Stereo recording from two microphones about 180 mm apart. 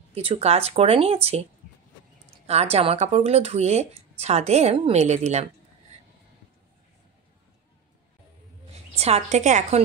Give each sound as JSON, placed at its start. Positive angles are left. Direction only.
{"t": 0.1, "sound": "speech", "side_deg": -35}
{"t": 2.4, "sound": "speech", "side_deg": -35}
{"t": 8.9, "sound": "speech", "side_deg": -35}